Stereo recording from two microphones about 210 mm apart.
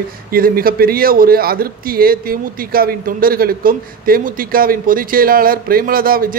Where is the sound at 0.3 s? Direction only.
45° right (ahead or behind).